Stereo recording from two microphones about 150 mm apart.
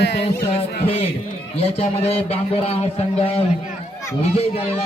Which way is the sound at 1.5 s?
45° left (ahead or behind).